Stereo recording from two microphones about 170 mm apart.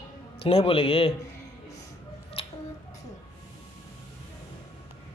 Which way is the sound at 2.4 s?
35° left (ahead or behind).